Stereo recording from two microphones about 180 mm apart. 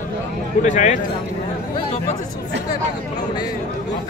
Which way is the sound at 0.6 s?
40° left (ahead or behind).